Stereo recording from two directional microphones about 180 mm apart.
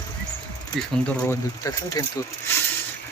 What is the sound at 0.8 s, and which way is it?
Speech, 10° left (ahead or behind).